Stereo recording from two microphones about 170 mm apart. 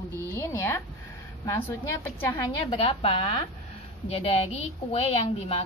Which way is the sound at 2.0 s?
15° left (ahead or behind).